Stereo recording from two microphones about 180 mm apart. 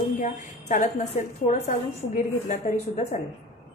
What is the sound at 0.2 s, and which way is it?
A woman's voice, 45° left (ahead or behind).